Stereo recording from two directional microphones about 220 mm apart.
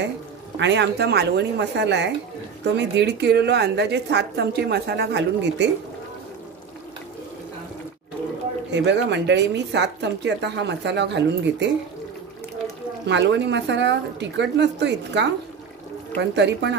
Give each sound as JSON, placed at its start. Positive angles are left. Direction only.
{"t": 0.6, "sound": "a woman's voice", "side_deg": -50}
{"t": 8.7, "sound": "a woman's voice", "side_deg": -55}
{"t": 13.0, "sound": "a woman's voice", "side_deg": -55}